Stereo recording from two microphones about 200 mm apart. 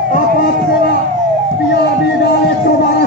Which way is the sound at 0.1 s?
45° left (ahead or behind).